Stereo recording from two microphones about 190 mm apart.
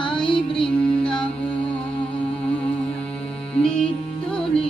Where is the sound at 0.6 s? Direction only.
5° left (ahead or behind).